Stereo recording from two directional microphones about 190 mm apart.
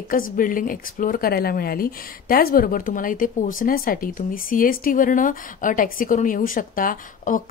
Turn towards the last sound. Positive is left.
turn(degrees=45)  # may be behind; listen again after turning